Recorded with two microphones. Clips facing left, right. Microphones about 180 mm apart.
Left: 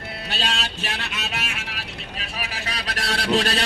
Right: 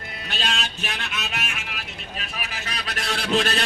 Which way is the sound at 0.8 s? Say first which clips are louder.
Left 1 dB; 35° left (ahead or behind).